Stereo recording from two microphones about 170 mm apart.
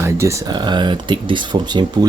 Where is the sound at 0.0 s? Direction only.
15° right (ahead or behind).